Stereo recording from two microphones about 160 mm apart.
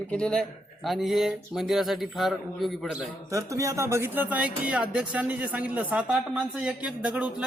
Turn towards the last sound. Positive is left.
turn(degrees=-5)  # may be behind; listen again after turning